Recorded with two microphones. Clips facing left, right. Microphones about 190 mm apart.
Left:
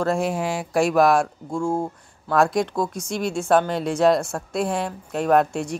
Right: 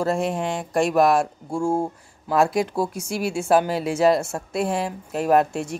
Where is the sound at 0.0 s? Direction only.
Centre (ahead or behind).